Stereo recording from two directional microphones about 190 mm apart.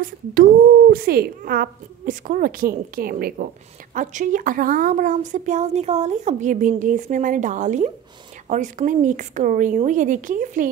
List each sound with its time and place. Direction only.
0.0 s a child's voice: 50° right (ahead or behind)